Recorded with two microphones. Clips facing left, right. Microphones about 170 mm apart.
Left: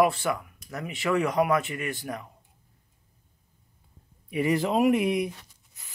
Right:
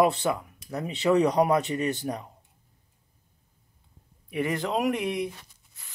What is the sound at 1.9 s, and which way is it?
Speech, 20° right (ahead or behind).